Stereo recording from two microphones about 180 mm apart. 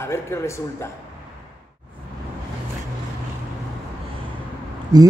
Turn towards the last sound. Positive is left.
turn(degrees=-20)  # may be behind; listen again after turning